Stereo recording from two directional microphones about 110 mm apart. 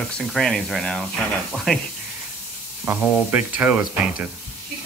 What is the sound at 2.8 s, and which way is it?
Speech, 15° right (ahead or behind).